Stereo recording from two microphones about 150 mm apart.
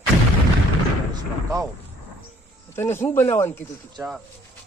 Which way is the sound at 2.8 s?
15° left (ahead or behind).